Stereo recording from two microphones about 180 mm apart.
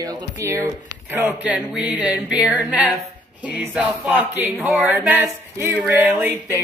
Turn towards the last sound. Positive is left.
turn(degrees=-15)  # may be behind; listen again after turning